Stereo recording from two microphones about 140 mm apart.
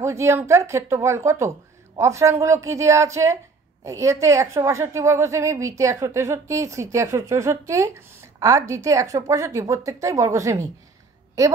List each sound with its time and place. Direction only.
0.0 s a woman's voice: 20° right (ahead or behind)